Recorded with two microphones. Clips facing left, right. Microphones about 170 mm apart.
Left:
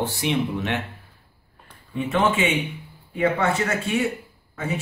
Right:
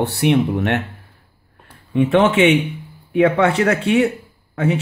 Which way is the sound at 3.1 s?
70° right (ahead or behind).